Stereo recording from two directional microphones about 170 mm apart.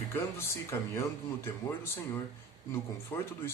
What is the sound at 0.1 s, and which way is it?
Speech, 15° left (ahead or behind).